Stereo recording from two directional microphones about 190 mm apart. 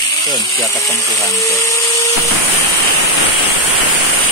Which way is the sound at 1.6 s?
15° left (ahead or behind).